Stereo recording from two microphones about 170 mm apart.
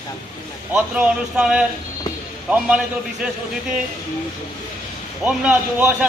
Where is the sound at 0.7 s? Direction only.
5° right (ahead or behind).